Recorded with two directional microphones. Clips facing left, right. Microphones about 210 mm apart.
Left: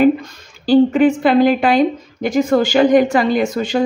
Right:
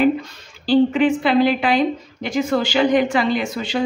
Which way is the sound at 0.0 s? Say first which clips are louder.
Left 4 dB; 45° left (ahead or behind).